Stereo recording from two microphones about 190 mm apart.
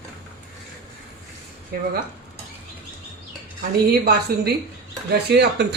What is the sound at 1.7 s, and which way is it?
Speech, 55° right (ahead or behind).